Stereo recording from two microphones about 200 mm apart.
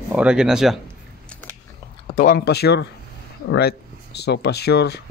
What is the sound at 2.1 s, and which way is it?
Speech, 45° left (ahead or behind).